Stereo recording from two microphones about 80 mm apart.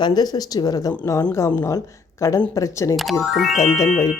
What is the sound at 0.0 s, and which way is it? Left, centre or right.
Speech, left.